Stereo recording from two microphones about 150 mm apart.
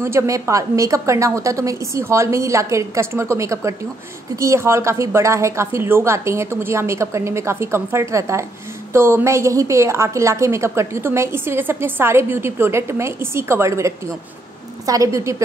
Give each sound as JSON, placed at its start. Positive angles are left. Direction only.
{"t": 0.0, "sound": "a woman's voice", "side_deg": -20}